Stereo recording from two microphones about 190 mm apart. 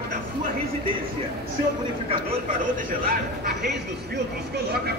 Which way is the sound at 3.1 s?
55° right (ahead or behind).